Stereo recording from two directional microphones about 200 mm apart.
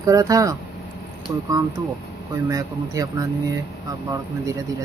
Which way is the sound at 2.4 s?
15° right (ahead or behind).